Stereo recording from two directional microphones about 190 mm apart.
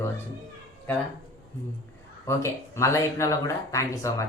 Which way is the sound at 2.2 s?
15° left (ahead or behind).